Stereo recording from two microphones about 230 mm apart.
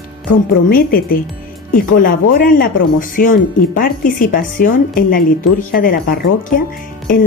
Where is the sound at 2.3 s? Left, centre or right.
Left.